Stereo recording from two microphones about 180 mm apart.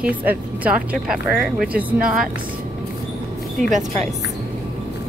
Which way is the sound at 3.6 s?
45° right (ahead or behind).